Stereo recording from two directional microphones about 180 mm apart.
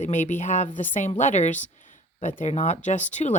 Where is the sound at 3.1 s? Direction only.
40° left (ahead or behind).